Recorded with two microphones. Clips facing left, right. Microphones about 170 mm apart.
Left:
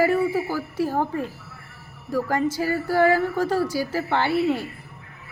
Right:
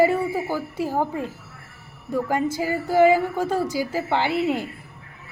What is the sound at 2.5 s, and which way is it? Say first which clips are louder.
A woman's voice: right 5 dB; 20° right (ahead or behind).